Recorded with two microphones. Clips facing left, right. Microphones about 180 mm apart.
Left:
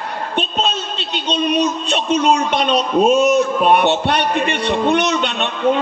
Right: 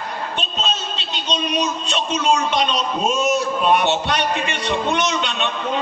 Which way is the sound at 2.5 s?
60° left (ahead or behind).